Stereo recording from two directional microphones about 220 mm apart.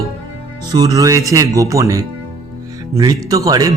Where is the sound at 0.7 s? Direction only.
15° right (ahead or behind).